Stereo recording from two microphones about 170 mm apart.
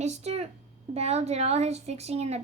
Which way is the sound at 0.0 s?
40° right (ahead or behind).